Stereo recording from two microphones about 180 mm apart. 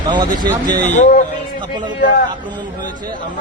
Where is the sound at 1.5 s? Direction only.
25° right (ahead or behind).